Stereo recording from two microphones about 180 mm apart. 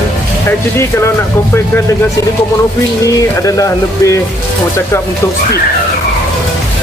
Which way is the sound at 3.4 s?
20° left (ahead or behind).